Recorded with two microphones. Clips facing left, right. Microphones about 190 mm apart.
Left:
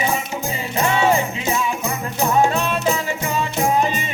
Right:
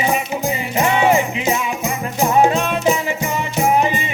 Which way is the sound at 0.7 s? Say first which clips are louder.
Right 2 dB; 15° right (ahead or behind).